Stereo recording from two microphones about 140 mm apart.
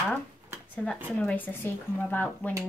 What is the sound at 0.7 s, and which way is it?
A woman's voice, 5° left (ahead or behind).